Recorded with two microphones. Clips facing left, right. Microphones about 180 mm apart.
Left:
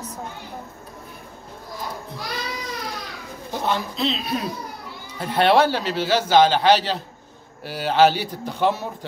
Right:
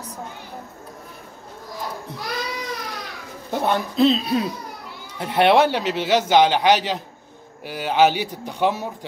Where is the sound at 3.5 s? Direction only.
55° right (ahead or behind).